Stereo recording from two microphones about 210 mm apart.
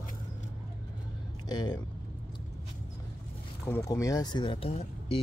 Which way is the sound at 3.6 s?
15° left (ahead or behind).